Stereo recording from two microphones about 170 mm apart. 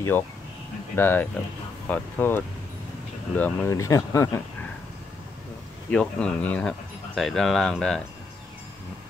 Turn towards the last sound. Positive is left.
turn(degrees=5)  # may be behind; listen again after turning